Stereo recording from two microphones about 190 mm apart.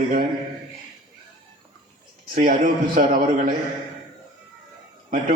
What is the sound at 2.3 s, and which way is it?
A man's voice, 45° right (ahead or behind).